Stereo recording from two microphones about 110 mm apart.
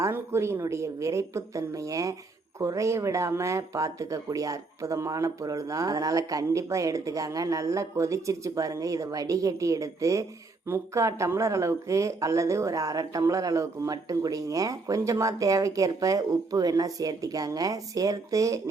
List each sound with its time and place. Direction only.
0.0 s speech: 25° right (ahead or behind)